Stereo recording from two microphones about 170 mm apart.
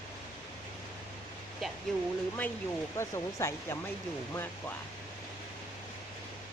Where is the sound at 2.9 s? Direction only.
15° left (ahead or behind).